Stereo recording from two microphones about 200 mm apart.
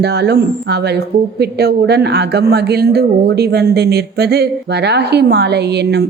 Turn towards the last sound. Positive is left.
turn(degrees=-55)  # may be behind; listen again after turning